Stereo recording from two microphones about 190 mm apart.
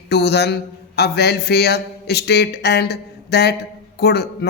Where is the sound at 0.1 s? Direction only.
60° left (ahead or behind).